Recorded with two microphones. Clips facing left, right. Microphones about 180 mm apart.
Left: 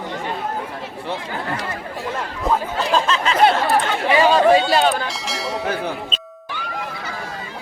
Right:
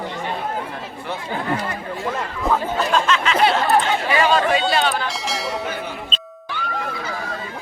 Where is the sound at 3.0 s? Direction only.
35° left (ahead or behind).